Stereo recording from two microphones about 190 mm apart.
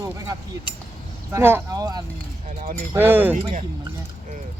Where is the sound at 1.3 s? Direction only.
15° right (ahead or behind).